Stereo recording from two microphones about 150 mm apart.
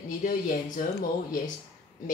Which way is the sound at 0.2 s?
60° left (ahead or behind).